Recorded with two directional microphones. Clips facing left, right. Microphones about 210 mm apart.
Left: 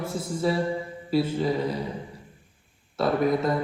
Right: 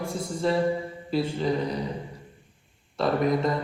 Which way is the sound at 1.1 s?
5° left (ahead or behind).